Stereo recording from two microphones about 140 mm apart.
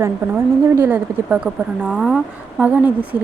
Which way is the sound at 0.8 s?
15° right (ahead or behind).